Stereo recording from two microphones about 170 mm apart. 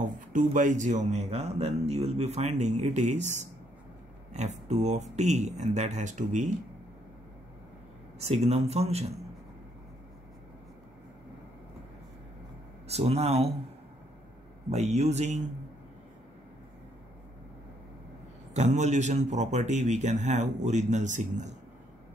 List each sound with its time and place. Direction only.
0.5 s a man's voice: 50° right (ahead or behind)
8.2 s a man's voice: 40° right (ahead or behind)
12.8 s a man's voice: 40° right (ahead or behind)
14.7 s a man's voice: 40° right (ahead or behind)
18.5 s a man's voice: 45° right (ahead or behind)